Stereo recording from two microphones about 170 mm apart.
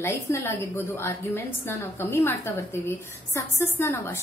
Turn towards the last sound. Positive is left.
turn(degrees=15)  # may be behind; listen again after turning